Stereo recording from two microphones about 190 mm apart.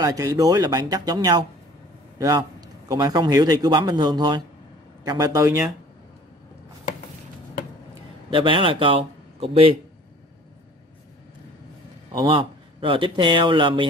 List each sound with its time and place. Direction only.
0.0 s a man's voice: 20° right (ahead or behind)
8.3 s speech: 25° right (ahead or behind)
12.1 s a man's voice: 20° right (ahead or behind)